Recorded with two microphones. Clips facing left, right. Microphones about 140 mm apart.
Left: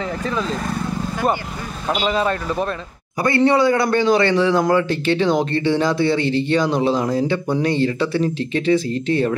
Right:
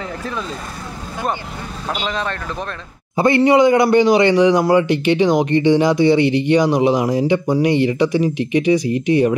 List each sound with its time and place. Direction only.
2.0 s speech: 5° left (ahead or behind)
3.2 s a man's voice: 20° right (ahead or behind)